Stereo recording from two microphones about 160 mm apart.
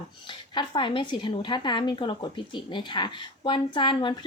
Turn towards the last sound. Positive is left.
turn(degrees=30)  # may be behind; listen again after turning